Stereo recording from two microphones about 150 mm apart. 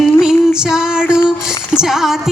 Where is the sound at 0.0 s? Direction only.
5° right (ahead or behind).